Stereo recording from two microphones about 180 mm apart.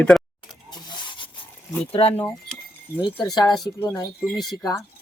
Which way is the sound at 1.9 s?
30° left (ahead or behind).